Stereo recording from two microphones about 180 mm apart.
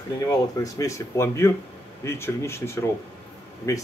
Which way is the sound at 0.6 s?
15° left (ahead or behind).